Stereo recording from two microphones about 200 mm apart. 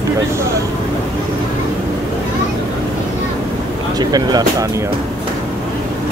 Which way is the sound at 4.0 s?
20° right (ahead or behind).